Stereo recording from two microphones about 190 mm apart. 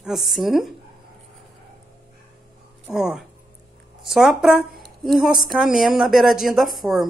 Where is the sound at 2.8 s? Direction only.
5° right (ahead or behind).